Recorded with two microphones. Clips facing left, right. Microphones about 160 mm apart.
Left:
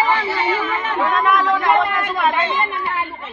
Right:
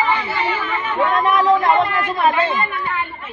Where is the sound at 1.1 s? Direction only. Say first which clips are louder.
Right 3 dB; 30° right (ahead or behind).